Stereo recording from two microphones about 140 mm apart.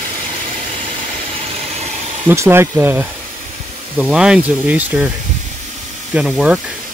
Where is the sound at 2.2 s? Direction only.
20° right (ahead or behind).